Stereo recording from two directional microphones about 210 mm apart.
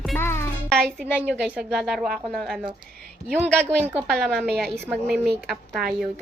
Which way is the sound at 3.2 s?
15° right (ahead or behind).